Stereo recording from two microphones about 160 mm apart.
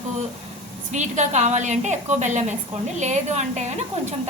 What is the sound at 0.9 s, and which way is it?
A woman's voice, 50° right (ahead or behind).